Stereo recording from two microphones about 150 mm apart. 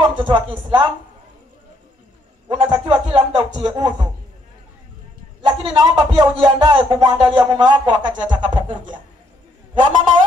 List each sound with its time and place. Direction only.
0.0 s speech: 35° right (ahead or behind)
2.4 s speech: 30° right (ahead or behind)
5.4 s speech: 30° right (ahead or behind)